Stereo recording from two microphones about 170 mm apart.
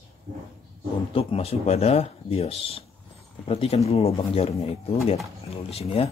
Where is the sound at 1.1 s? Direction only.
35° left (ahead or behind).